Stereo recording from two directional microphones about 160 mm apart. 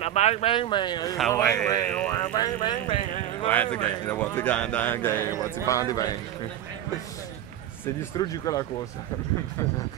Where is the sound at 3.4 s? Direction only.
10° left (ahead or behind); by 6.5 s 25° left (ahead or behind).